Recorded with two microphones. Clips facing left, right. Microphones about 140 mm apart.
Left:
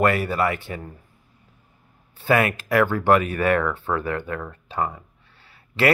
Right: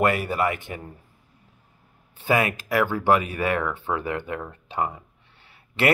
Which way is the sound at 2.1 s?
15° right (ahead or behind).